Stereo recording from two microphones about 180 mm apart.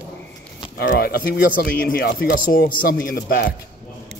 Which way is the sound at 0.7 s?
60° left (ahead or behind).